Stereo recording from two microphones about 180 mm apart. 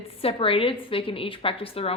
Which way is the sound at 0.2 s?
30° left (ahead or behind).